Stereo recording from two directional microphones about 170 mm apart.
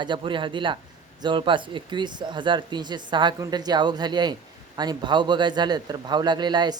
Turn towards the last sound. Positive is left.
turn(degrees=-25)  # may be behind; listen again after turning